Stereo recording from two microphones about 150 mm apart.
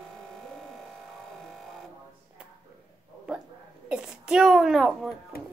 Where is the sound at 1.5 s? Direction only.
Centre (ahead or behind).